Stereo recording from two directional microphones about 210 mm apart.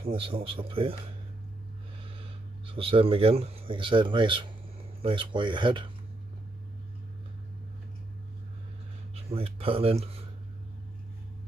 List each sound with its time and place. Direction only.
0.0 s speech: 25° right (ahead or behind)
2.1 s speech: 25° right (ahead or behind)
9.1 s speech: 30° right (ahead or behind)